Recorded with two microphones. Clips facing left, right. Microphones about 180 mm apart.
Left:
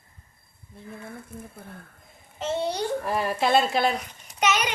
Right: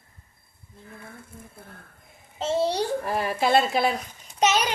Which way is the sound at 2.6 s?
30° right (ahead or behind).